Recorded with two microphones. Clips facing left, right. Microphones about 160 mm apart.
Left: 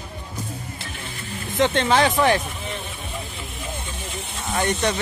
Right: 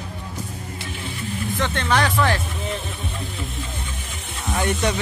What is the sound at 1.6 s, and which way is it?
Speech, 20° left (ahead or behind).